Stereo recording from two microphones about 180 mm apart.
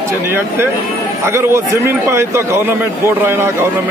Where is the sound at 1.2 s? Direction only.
15° right (ahead or behind).